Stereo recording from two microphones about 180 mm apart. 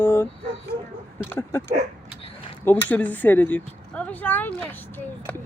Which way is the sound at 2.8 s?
10° left (ahead or behind).